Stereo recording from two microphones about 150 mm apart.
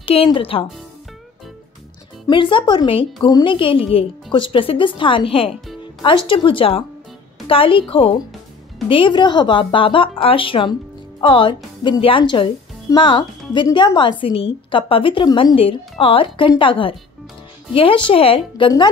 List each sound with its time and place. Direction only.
0.0 s a woman's voice: 40° left (ahead or behind)
2.2 s a woman's voice: 35° left (ahead or behind)